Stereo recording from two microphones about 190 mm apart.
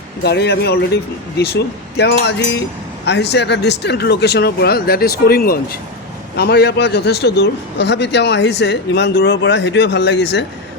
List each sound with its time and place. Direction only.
0.2 s a man's voice: 60° left (ahead or behind)